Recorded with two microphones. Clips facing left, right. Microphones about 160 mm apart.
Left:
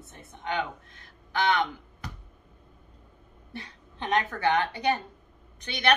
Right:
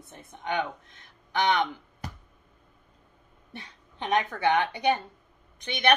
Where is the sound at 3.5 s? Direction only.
15° right (ahead or behind).